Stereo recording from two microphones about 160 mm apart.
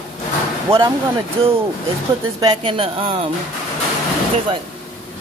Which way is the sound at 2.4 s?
30° right (ahead or behind).